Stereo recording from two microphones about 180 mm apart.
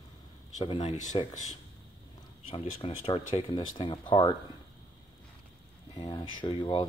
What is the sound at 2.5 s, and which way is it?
Speech, 30° left (ahead or behind).